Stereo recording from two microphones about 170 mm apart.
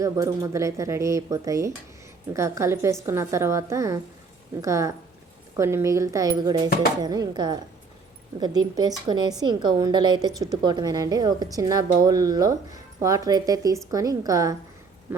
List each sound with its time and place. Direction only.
0.0 s speech: 20° right (ahead or behind)